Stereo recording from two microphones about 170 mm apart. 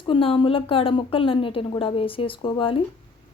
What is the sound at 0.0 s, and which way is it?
Speech, 30° left (ahead or behind).